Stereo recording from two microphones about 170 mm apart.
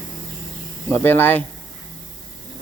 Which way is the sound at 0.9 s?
10° left (ahead or behind).